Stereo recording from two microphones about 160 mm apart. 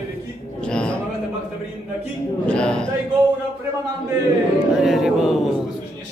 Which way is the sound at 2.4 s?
5° left (ahead or behind).